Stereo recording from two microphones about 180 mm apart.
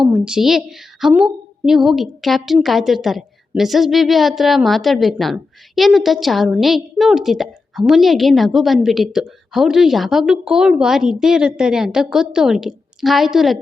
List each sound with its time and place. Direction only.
0.1 s a woman's voice: 5° right (ahead or behind)